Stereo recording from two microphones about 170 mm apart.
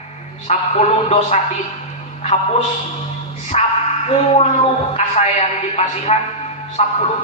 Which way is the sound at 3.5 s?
40° left (ahead or behind).